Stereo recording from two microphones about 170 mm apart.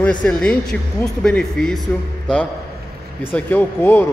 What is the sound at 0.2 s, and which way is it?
A man's voice, 5° left (ahead or behind).